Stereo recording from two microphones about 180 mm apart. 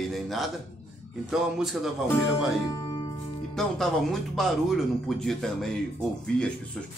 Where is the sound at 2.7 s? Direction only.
20° left (ahead or behind).